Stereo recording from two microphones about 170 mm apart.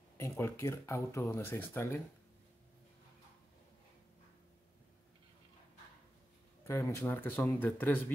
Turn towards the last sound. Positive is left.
turn(degrees=10)  # may be behind; listen again after turning